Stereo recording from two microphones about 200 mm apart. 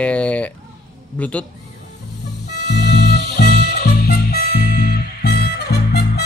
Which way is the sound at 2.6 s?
55° left (ahead or behind).